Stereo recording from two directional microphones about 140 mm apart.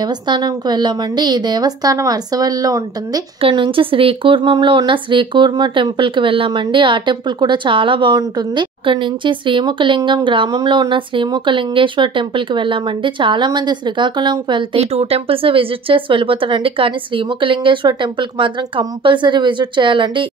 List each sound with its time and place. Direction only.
0.0 s a woman's voice: 30° right (ahead or behind)
3.3 s a woman's voice: 40° right (ahead or behind)